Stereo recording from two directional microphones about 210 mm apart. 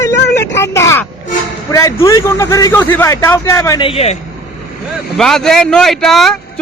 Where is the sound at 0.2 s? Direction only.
50° left (ahead or behind).